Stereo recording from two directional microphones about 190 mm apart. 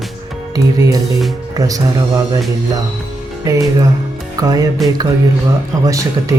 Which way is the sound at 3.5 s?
20° right (ahead or behind).